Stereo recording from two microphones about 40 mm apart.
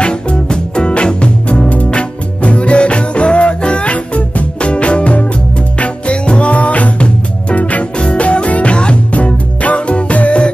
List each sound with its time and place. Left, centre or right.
0.0 s music: left